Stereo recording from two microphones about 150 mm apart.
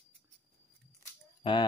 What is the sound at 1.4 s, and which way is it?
Speech, 30° left (ahead or behind).